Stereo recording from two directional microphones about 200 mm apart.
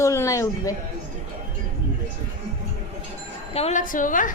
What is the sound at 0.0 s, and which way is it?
Speech, 15° left (ahead or behind).